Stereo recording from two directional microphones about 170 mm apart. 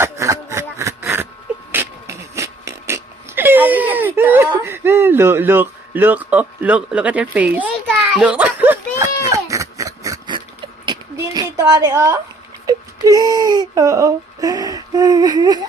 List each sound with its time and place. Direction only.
0.0 s a sound: 15° right (ahead or behind)
8.1 s a child's voice: 5° right (ahead or behind)
9.3 s oink: 20° right (ahead or behind)
11.3 s a woman's voice: 25° right (ahead or behind)